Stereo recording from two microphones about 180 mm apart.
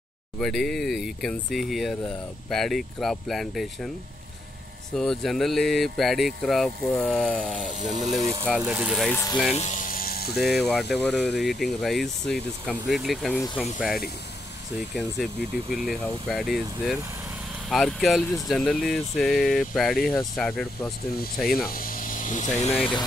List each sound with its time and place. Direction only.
0.4 s speech: centre (ahead or behind)
4.9 s speech: centre (ahead or behind)
7.7 s speech: 40° right (ahead or behind)
8.5 s speech: 5° right (ahead or behind)
9.1 s speech: 15° left (ahead or behind)
9.5 s vehicle: 40° left (ahead or behind); by 10.6 s 60° left (ahead or behind)
10.6 s speech: centre (ahead or behind)
15.2 s speech: centre (ahead or behind)
21.5 s speech: 55° left (ahead or behind)